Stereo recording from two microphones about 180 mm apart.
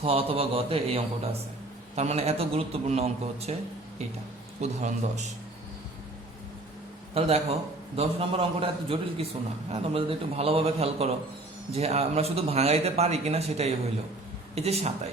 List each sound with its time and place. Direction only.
0.0 s a man's voice: 30° right (ahead or behind)
4.6 s a man's voice: 40° right (ahead or behind)
7.1 s a man's voice: 35° right (ahead or behind)